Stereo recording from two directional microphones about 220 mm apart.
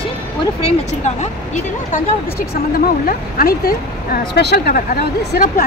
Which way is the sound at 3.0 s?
40° left (ahead or behind).